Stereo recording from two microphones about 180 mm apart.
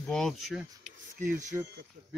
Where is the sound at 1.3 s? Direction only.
20° right (ahead or behind).